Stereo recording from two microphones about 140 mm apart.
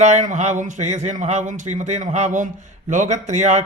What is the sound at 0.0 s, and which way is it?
Speech, 60° right (ahead or behind).